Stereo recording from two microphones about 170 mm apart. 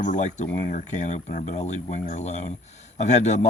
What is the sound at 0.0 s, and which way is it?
Speech, 45° left (ahead or behind).